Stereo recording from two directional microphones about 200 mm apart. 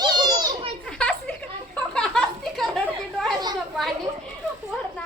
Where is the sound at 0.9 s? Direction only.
5° left (ahead or behind).